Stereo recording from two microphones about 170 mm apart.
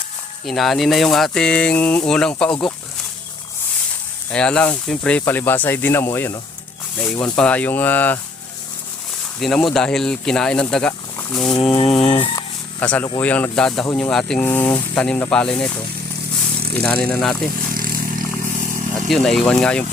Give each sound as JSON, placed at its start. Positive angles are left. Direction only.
{"t": 0.4, "sound": "speech", "side_deg": 0}
{"t": 4.3, "sound": "speech", "side_deg": 5}
{"t": 9.4, "sound": "speech", "side_deg": 0}
{"t": 11.9, "sound": "fowl", "side_deg": 40}
{"t": 12.8, "sound": "speech", "side_deg": 5}
{"t": 16.7, "sound": "speech", "side_deg": 10}
{"t": 17.7, "sound": "vehicle", "side_deg": -55}
{"t": 19.0, "sound": "speech", "side_deg": 0}